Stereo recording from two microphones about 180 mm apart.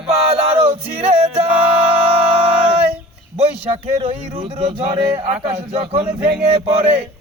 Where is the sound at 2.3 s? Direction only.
35° right (ahead or behind).